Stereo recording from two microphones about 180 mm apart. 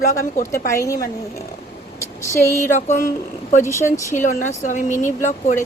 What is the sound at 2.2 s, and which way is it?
Speech, 15° left (ahead or behind).